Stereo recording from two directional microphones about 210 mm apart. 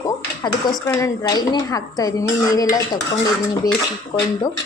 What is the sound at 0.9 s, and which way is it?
Speech, 15° left (ahead or behind).